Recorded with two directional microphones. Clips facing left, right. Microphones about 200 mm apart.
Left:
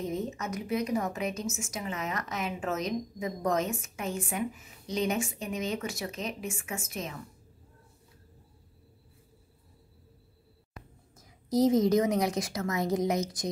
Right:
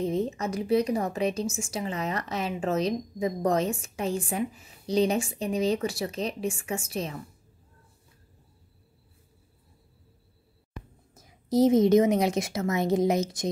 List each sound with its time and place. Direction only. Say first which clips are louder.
0.0 s a woman's voice: right 6 dB; 30° right (ahead or behind)
11.1 s a woman's voice: right 3 dB; 25° right (ahead or behind)